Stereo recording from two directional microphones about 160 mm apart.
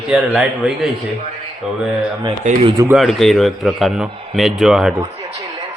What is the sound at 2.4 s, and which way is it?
Speech, 50° right (ahead or behind).